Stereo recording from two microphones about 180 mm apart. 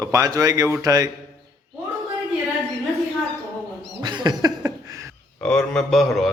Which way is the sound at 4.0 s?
25° right (ahead or behind).